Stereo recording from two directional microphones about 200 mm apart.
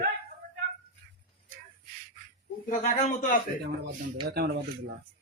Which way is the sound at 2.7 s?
40° left (ahead or behind).